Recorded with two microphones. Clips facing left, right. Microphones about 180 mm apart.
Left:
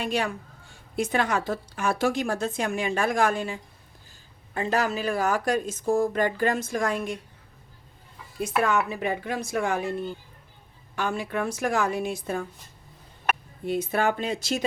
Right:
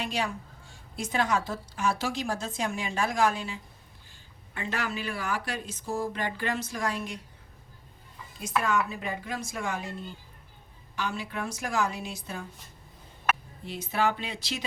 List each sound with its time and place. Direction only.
0.0 s a woman's voice: 55° left (ahead or behind)
4.5 s speech: 40° left (ahead or behind)
8.4 s a woman's voice: 60° left (ahead or behind)
10.9 s a woman's voice: 50° left (ahead or behind)
13.7 s speech: 50° left (ahead or behind)